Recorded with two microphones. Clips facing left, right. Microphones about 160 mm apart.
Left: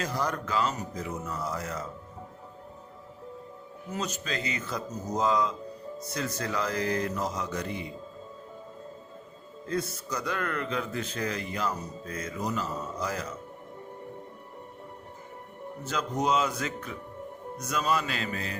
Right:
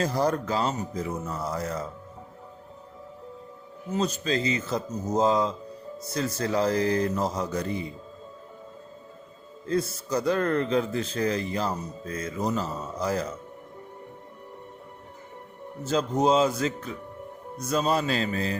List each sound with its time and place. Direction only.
0.0 s speech: 35° right (ahead or behind)
3.9 s speech: 30° right (ahead or behind)
9.6 s speech: 30° right (ahead or behind)
15.8 s speech: 30° right (ahead or behind)